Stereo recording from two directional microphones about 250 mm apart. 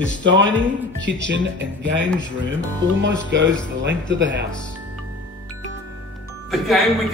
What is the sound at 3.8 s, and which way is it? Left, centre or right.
Speech, right.